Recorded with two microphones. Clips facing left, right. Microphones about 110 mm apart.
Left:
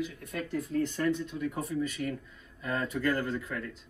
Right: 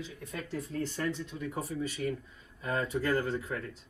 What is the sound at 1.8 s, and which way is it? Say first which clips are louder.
Speech: even; 50° left (ahead or behind).